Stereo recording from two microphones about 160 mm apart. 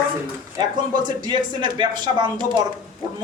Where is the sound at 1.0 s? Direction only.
30° right (ahead or behind).